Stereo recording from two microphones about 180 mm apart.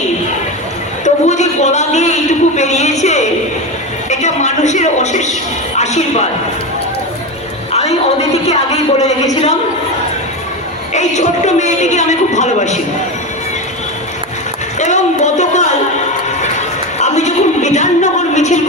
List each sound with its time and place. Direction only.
1.0 s a sound: 40° left (ahead or behind)
2.6 s speech: 40° left (ahead or behind)
7.7 s speech: 35° left (ahead or behind)
10.9 s speech: 40° left (ahead or behind)
14.8 s speech: 40° left (ahead or behind)
17.0 s a sound: 40° left (ahead or behind)